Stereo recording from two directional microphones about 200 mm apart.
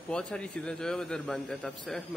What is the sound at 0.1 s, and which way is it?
A man's voice, 5° left (ahead or behind).